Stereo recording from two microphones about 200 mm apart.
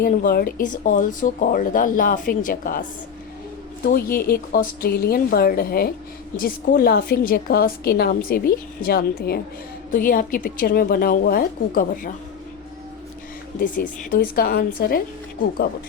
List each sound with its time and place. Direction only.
0.0 s a woman's voice: 45° left (ahead or behind)
3.8 s a woman's voice: 50° left (ahead or behind)
13.6 s a woman's voice: 40° left (ahead or behind)